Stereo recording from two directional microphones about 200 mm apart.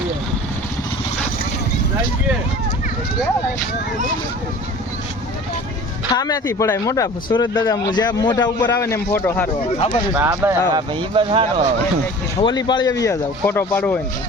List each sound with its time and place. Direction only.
6.1 s speech: 20° left (ahead or behind)
9.7 s speech: 30° left (ahead or behind)
10.2 s speech: 10° right (ahead or behind)
10.8 s speech: 25° right (ahead or behind)
12.4 s speech: 20° left (ahead or behind)